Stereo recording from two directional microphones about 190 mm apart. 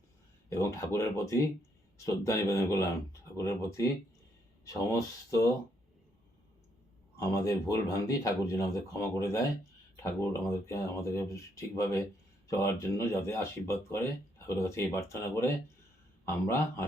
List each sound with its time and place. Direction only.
0.5 s speech: 15° left (ahead or behind)
7.4 s speech: 15° left (ahead or behind)